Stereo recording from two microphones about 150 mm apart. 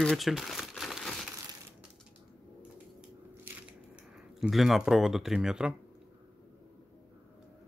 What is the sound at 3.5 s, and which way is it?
Crushing, 15° right (ahead or behind).